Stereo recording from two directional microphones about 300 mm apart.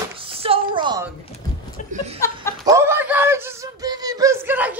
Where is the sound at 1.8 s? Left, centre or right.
Left.